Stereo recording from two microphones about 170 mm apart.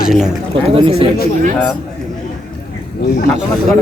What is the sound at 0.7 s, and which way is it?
Speech, 35° right (ahead or behind).